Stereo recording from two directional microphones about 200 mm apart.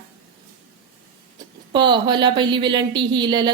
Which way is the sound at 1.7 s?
25° right (ahead or behind).